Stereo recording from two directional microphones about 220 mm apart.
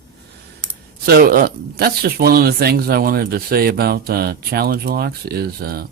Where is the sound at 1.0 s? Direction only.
40° right (ahead or behind).